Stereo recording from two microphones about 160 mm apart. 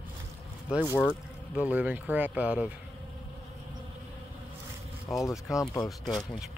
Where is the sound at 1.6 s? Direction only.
10° right (ahead or behind).